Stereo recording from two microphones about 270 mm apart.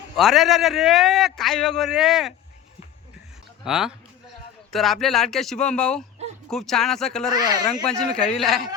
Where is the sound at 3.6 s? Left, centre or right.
Centre.